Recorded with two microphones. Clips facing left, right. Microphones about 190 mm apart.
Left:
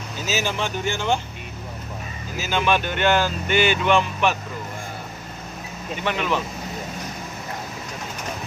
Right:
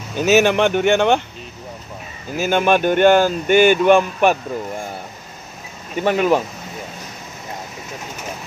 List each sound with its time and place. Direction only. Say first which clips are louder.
0.2 s speech: right 12 dB; 65° right (ahead or behind)
2.3 s speech: right 6 dB; 55° right (ahead or behind)
6.0 s speech: right 8 dB; 45° right (ahead or behind)